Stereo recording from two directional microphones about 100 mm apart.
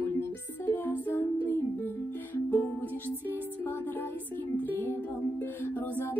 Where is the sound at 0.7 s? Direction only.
20° left (ahead or behind).